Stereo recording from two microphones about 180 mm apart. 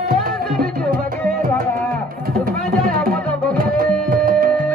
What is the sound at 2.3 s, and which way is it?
Music, 55° right (ahead or behind).